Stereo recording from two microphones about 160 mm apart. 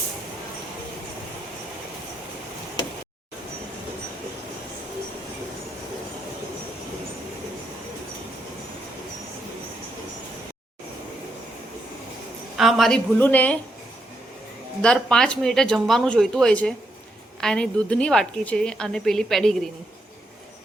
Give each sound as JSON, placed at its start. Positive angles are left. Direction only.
{"t": 12.5, "sound": "a woman's voice", "side_deg": 0}
{"t": 14.8, "sound": "a woman's voice", "side_deg": 5}